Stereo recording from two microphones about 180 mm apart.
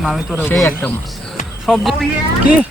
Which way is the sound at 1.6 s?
Centre (ahead or behind).